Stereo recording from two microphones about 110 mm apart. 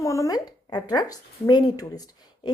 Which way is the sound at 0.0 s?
30° left (ahead or behind).